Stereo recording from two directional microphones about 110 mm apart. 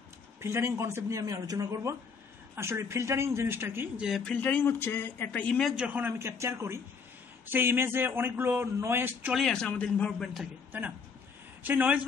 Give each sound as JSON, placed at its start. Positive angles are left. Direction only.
{"t": 0.4, "sound": "speech", "side_deg": -25}
{"t": 3.9, "sound": "speech", "side_deg": -5}
{"t": 4.2, "sound": "speech", "side_deg": 15}
{"t": 5.6, "sound": "a man's voice", "side_deg": 0}
{"t": 5.9, "sound": "speech", "side_deg": -20}
{"t": 9.3, "sound": "speech", "side_deg": 5}
{"t": 10.1, "sound": "a man's voice", "side_deg": -5}
{"t": 11.6, "sound": "speech", "side_deg": -15}